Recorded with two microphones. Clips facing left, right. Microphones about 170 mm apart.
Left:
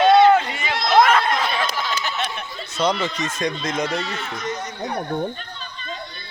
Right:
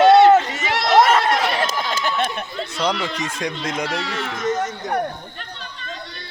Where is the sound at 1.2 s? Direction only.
80° right.